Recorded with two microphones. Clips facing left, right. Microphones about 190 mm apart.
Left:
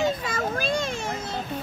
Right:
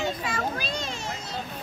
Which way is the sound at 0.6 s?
50° left (ahead or behind).